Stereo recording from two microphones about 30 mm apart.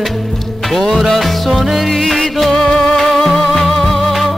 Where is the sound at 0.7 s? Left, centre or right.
Centre.